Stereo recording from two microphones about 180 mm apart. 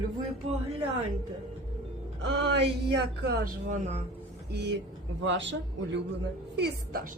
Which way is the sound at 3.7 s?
40° right (ahead or behind).